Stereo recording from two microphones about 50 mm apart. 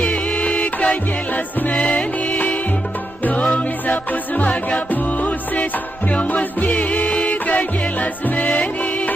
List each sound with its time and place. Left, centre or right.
0.4 s music: left